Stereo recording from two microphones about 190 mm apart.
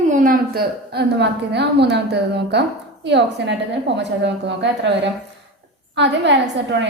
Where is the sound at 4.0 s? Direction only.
65° right (ahead or behind).